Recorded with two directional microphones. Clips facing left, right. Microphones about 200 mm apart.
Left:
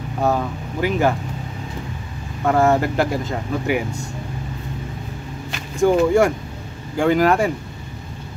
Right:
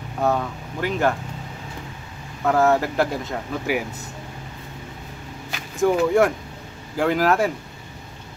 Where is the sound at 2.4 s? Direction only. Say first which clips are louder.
Left 2 dB; centre (ahead or behind).